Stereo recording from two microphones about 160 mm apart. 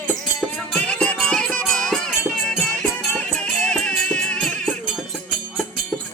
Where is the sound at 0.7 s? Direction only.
5° left (ahead or behind).